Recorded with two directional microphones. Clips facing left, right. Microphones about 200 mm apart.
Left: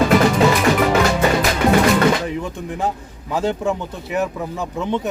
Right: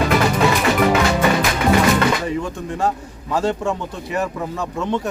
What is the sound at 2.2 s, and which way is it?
A man's voice, 5° left (ahead or behind).